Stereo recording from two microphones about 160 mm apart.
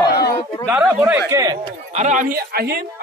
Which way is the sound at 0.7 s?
10° right (ahead or behind).